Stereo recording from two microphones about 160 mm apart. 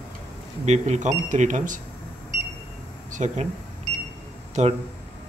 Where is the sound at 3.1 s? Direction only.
50° right (ahead or behind).